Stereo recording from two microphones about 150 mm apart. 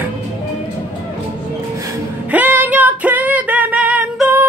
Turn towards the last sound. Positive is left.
turn(degrees=-10)  # may be behind; listen again after turning